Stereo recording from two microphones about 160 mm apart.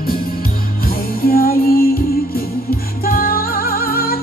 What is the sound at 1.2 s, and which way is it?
Music, 70° left (ahead or behind).